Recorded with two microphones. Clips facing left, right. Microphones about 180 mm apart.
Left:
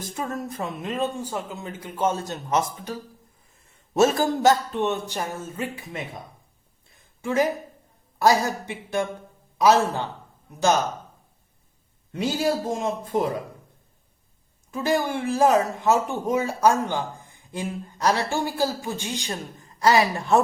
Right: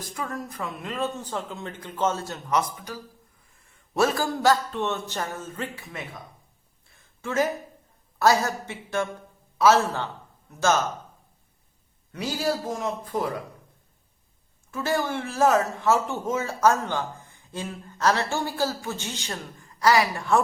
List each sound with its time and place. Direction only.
0.0 s speech: 25° left (ahead or behind)
6.9 s a sound: 15° left (ahead or behind)
8.2 s a man's voice: 15° left (ahead or behind)
12.1 s speech: 25° left (ahead or behind)
14.7 s a man's voice: 15° left (ahead or behind)